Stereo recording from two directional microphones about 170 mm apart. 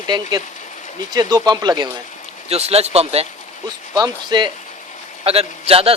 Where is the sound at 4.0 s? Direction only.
25° right (ahead or behind).